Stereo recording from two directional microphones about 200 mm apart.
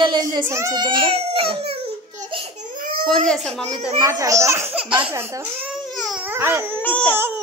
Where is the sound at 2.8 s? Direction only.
45° right (ahead or behind).